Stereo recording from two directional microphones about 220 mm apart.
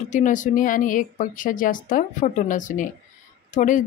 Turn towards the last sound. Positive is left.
turn(degrees=35)  # may be behind; listen again after turning